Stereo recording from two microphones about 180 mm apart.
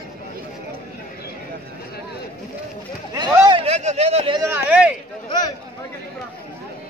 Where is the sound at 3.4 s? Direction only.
25° right (ahead or behind).